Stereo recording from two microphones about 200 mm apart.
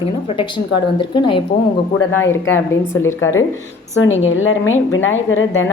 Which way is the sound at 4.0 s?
80° left.